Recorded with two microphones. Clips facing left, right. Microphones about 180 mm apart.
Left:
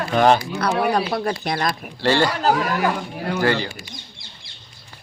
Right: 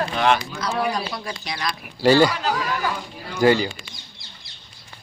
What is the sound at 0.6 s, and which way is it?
Speech, 60° left (ahead or behind).